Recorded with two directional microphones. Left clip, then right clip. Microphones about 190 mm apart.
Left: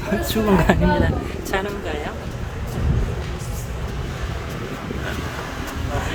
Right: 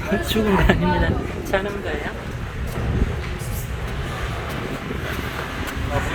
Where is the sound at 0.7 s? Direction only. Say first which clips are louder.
Left 1 dB; 5° left (ahead or behind).